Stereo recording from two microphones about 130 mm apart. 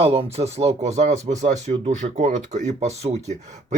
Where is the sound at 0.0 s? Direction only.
50° right (ahead or behind).